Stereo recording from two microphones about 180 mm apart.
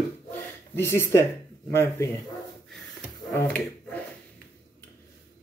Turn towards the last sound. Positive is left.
turn(degrees=10)  # may be behind; listen again after turning